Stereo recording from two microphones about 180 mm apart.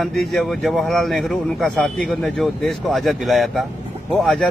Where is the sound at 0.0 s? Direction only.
Centre (ahead or behind).